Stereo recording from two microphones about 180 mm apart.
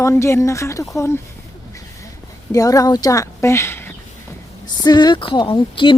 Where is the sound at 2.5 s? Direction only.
20° left (ahead or behind).